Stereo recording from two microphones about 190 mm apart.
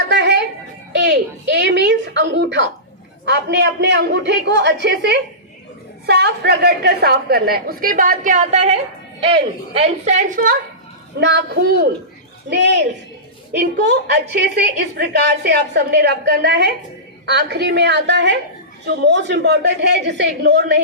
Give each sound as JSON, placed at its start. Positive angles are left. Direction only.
{"t": 0.1, "sound": "a sound", "side_deg": -65}
{"t": 3.2, "sound": "a woman's voice", "side_deg": -65}
{"t": 11.2, "sound": "a woman's voice", "side_deg": -65}